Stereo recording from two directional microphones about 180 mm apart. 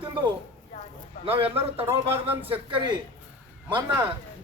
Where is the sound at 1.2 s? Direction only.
30° right (ahead or behind).